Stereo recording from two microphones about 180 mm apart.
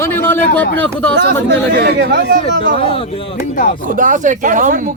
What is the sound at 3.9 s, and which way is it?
Speech, 45° right (ahead or behind).